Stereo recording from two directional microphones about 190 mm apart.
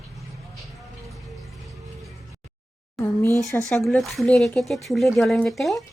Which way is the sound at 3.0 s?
10° left (ahead or behind).